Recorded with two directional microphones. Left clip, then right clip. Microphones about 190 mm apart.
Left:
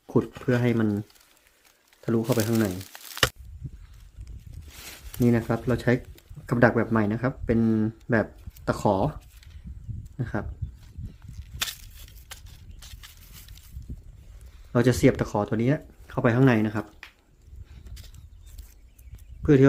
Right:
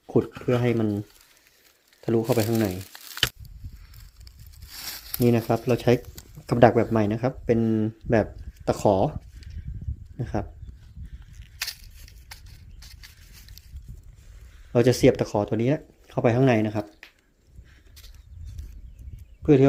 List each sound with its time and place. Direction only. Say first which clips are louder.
0.1 s speech: right 2 dB; 5° right (ahead or behind)
2.3 s speech: right 2 dB; 10° right (ahead or behind)
4.3 s a sound: right 5 dB; 60° right (ahead or behind)
5.2 s speech: right 2 dB; 10° right (ahead or behind)
10.2 s speech: right 2 dB; 10° right (ahead or behind)
14.7 s speech: right 3 dB; 5° right (ahead or behind)
19.4 s a sound: right 1 dB; 5° right (ahead or behind)